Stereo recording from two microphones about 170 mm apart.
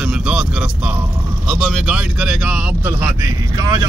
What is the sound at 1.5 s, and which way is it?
Speech, 5° right (ahead or behind).